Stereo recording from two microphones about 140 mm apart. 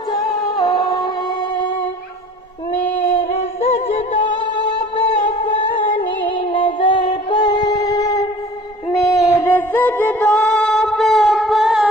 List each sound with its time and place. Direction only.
3.3 s music: 50° left (ahead or behind)
6.2 s music: 35° left (ahead or behind); by 10.3 s 15° left (ahead or behind)
10.3 s a sound: 5° left (ahead or behind)